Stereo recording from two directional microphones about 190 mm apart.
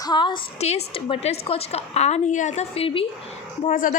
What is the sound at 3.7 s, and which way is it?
Speech, 45° left (ahead or behind).